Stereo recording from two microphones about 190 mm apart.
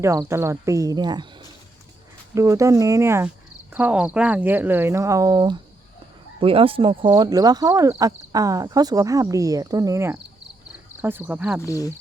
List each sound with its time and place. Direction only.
0.0 s speech: 15° right (ahead or behind)
2.3 s speech: 15° right (ahead or behind)
11.6 s speech: 15° left (ahead or behind)